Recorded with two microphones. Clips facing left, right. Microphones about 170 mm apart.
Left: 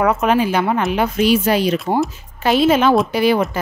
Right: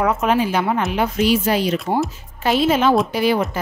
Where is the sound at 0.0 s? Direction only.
65° left (ahead or behind).